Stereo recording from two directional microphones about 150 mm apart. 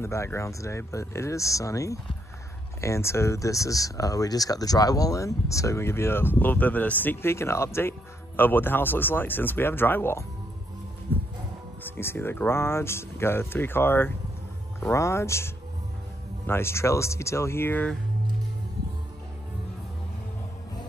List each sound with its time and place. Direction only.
0.0 s speech: 20° left (ahead or behind)
11.8 s speech: 15° left (ahead or behind)